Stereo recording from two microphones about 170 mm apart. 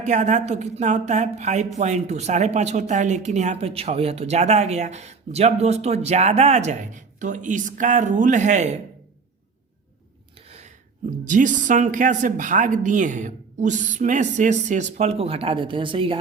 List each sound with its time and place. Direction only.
0.0 s speech: 45° right (ahead or behind)
11.3 s a woman's voice: 50° right (ahead or behind); by 16.1 s 30° right (ahead or behind)